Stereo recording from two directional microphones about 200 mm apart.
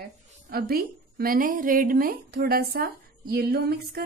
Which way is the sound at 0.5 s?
50° right (ahead or behind).